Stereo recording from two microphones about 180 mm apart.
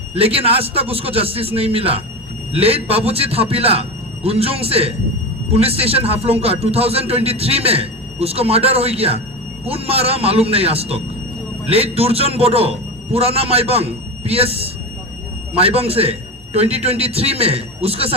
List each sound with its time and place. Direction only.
0.1 s a man's voice: 30° right (ahead or behind)